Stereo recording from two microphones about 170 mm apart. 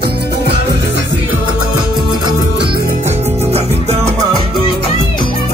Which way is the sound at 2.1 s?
25° right (ahead or behind).